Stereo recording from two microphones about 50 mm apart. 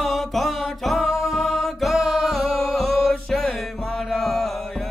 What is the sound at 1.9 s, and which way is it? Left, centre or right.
Music, centre.